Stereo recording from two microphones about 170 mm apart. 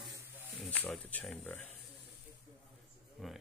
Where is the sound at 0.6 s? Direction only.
5° left (ahead or behind).